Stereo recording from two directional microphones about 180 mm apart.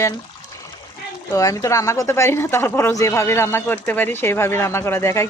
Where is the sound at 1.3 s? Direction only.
20° left (ahead or behind).